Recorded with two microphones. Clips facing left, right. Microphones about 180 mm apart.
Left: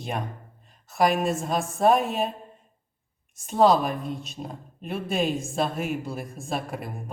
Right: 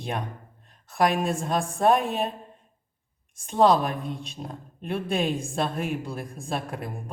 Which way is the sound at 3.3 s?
Centre (ahead or behind).